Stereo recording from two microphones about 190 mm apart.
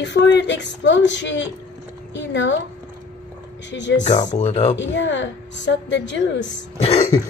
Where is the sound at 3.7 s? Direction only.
70° left (ahead or behind).